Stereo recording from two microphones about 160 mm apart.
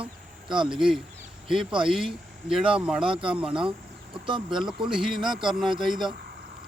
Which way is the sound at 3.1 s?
35° right (ahead or behind).